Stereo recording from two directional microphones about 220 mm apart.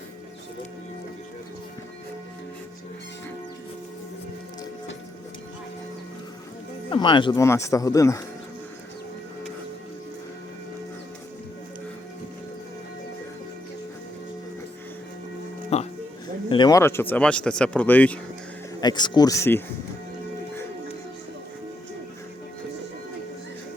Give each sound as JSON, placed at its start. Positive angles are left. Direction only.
{"t": 6.9, "sound": "speech", "side_deg": 20}
{"t": 15.7, "sound": "music", "side_deg": 30}
{"t": 16.5, "sound": "speech", "side_deg": 20}
{"t": 18.8, "sound": "speech", "side_deg": 20}